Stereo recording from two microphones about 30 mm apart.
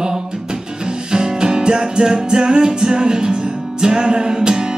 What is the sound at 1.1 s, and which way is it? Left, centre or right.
Music, right.